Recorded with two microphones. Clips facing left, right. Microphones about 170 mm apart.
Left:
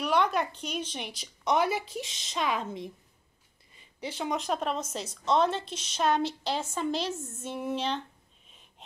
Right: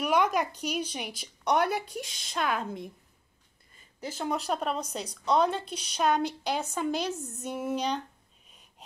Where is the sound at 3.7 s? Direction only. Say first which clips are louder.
Left 1 dB; 45° right (ahead or behind).